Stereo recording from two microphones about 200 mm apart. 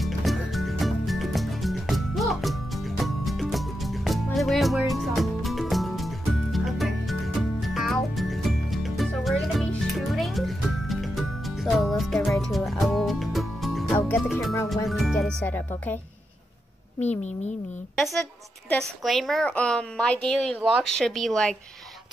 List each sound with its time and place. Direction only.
0.0 s music: centre (ahead or behind)
14.0 s music: 10° left (ahead or behind)
14.9 s music: centre (ahead or behind)
17.0 s speech: 35° left (ahead or behind)
17.9 s a woman's voice: centre (ahead or behind)